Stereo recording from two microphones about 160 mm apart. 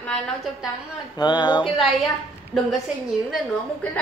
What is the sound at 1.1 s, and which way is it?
Speech, 25° left (ahead or behind).